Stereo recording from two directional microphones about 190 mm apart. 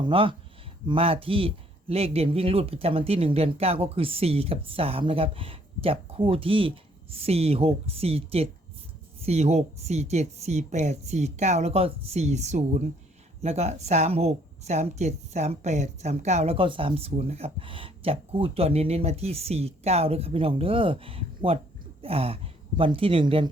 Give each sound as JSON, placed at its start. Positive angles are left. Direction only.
{"t": 0.0, "sound": "a woman's voice", "side_deg": -25}